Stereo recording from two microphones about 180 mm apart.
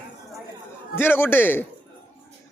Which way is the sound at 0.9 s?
10° left (ahead or behind).